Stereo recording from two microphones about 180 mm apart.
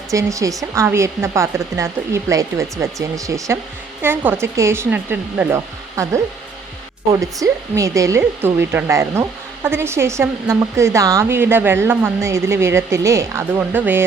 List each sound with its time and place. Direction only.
0.1 s speech: 15° right (ahead or behind)